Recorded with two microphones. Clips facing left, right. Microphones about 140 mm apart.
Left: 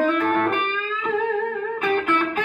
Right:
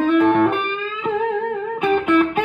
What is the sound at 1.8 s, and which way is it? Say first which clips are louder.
Music: right 4 dB; centre (ahead or behind).